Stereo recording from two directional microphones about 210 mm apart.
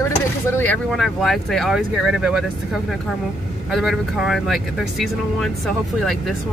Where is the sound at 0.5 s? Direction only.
5° left (ahead or behind).